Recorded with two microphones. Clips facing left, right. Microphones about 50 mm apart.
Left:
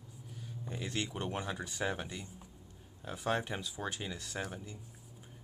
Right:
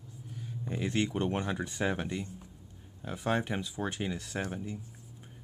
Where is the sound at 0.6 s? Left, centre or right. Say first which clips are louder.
Right 7 dB; right.